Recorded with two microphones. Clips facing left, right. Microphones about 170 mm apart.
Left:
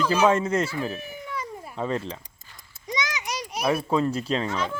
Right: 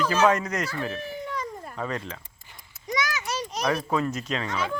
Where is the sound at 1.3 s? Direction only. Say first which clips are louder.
Right 1 dB; 5° left (ahead or behind).